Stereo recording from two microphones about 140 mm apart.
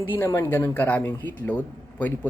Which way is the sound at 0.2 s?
20° left (ahead or behind).